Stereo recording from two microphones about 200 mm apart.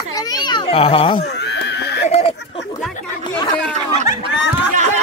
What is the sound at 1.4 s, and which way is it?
Neigh, 60° left (ahead or behind).